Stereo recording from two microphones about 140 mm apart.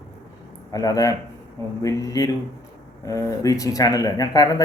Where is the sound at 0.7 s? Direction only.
25° left (ahead or behind).